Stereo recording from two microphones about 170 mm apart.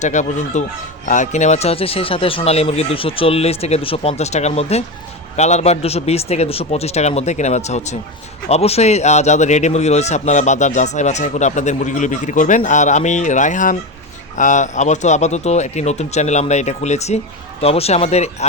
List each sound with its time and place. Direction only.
0.0 s a man's voice: 45° left (ahead or behind)